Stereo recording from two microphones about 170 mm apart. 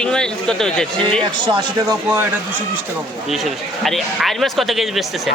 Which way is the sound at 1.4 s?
25° right (ahead or behind).